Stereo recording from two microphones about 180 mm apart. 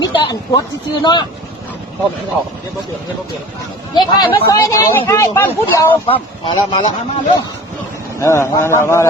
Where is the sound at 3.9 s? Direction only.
25° left (ahead or behind).